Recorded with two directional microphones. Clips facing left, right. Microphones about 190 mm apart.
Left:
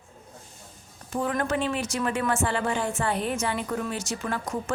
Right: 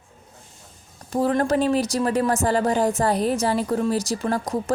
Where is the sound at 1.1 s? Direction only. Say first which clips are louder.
Right 6 dB; 35° right (ahead or behind).